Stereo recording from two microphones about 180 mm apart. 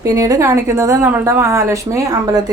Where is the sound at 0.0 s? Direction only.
20° right (ahead or behind).